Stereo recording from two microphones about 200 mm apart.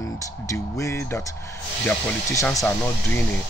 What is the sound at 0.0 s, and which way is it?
Music, 15° left (ahead or behind).